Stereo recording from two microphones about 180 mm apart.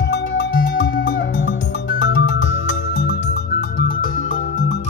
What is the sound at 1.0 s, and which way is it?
Music, 80° left.